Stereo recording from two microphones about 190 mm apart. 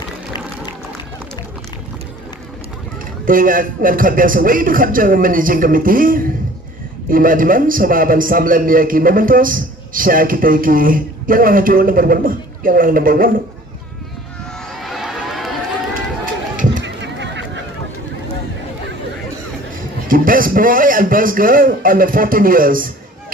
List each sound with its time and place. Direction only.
3.2 s a man's voice: 45° right (ahead or behind)
14.8 s run: centre (ahead or behind)
16.8 s a sound: 70° right (ahead or behind)
20.1 s a man's voice: 45° right (ahead or behind)